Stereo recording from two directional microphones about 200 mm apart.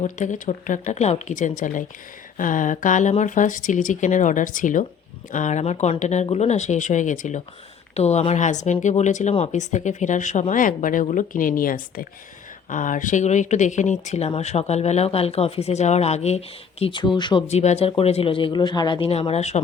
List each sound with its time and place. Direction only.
0.0 s speech: 40° left (ahead or behind)